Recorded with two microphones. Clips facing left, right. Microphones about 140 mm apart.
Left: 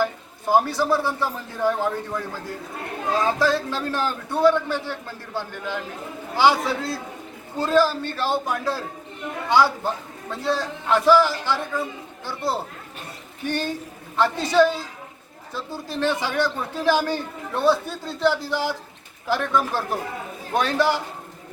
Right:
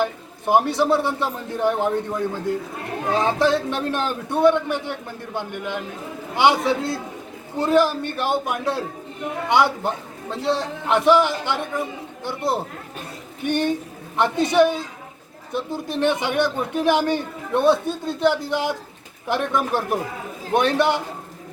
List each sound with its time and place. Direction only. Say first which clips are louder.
0.0 s a man's voice: right 1 dB; 20° right (ahead or behind)